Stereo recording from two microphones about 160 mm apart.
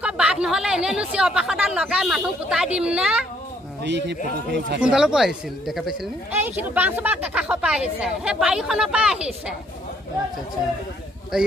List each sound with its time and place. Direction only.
0.0 s speech: 5° right (ahead or behind)
3.8 s a man's voice: 90° right
4.8 s a woman's voice: 5° right (ahead or behind)
11.3 s speech: 5° right (ahead or behind)